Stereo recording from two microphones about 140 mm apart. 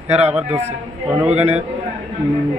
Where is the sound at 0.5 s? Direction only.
50° right (ahead or behind).